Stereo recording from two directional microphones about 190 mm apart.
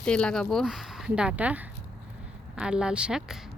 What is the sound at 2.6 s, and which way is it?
Speech, 5° right (ahead or behind).